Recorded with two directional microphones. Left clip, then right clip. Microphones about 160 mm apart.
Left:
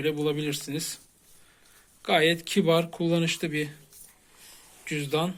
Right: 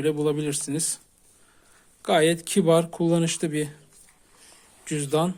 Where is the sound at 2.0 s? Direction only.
35° right (ahead or behind).